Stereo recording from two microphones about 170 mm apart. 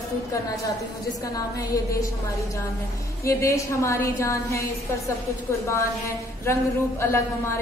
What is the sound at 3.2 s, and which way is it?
A woman's voice, 15° left (ahead or behind).